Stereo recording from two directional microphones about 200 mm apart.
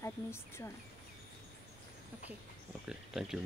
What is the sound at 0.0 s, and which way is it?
Speech, 15° left (ahead or behind).